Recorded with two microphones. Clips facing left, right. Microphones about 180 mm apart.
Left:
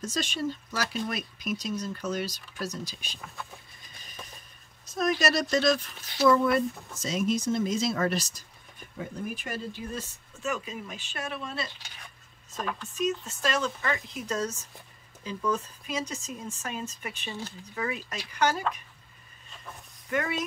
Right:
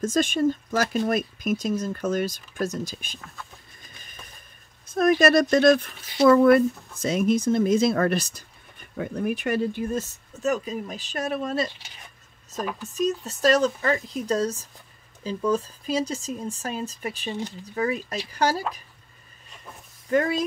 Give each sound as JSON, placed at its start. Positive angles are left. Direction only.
{"t": 0.0, "sound": "speech", "side_deg": -50}
{"t": 4.8, "sound": "speech", "side_deg": -55}
{"t": 8.9, "sound": "speech", "side_deg": -70}
{"t": 12.8, "sound": "speech", "side_deg": -40}
{"t": 17.3, "sound": "speech", "side_deg": -15}
{"t": 17.7, "sound": "speech", "side_deg": -35}
{"t": 20.1, "sound": "speech", "side_deg": -35}